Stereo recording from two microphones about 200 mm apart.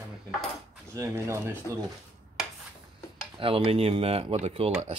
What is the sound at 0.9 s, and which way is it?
Speech, 15° right (ahead or behind).